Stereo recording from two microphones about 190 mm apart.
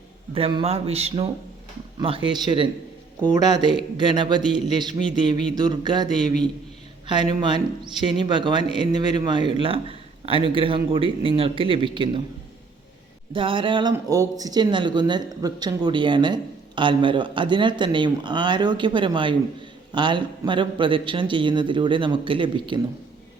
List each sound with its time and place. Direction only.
0.3 s a man's voice: 30° right (ahead or behind)
13.3 s speech: 25° right (ahead or behind)